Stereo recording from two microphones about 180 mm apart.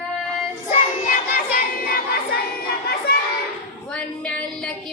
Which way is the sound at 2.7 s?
60° left (ahead or behind).